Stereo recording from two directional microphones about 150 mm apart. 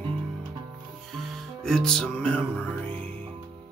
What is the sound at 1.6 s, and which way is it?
Music, 5° left (ahead or behind).